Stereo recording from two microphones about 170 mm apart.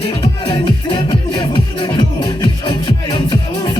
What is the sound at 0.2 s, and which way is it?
Music, 25° left (ahead or behind).